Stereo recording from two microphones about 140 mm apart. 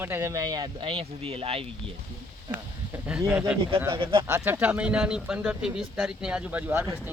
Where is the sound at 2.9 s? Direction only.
5° right (ahead or behind).